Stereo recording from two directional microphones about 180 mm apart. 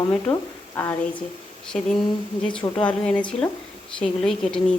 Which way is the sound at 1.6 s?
5° left (ahead or behind).